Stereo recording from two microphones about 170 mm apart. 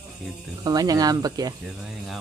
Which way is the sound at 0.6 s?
20° right (ahead or behind).